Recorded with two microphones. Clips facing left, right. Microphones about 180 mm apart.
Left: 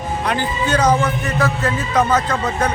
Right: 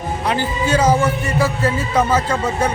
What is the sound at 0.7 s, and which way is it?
Speech, 10° right (ahead or behind).